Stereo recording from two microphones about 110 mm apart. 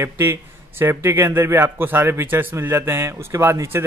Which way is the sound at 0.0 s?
20° right (ahead or behind).